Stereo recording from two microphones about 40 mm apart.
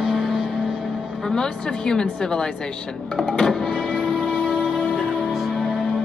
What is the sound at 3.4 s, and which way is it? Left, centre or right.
Music, centre.